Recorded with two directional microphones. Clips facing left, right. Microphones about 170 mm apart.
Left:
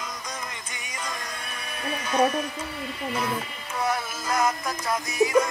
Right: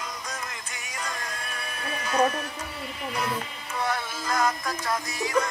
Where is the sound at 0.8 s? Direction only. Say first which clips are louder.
Even; centre (ahead or behind).